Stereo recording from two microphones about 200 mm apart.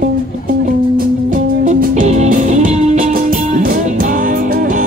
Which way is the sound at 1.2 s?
40° right (ahead or behind).